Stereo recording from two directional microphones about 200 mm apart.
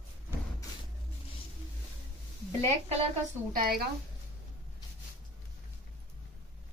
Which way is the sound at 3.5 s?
45° right (ahead or behind).